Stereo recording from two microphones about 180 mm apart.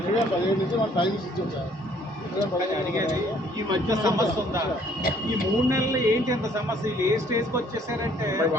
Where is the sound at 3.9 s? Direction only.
20° right (ahead or behind).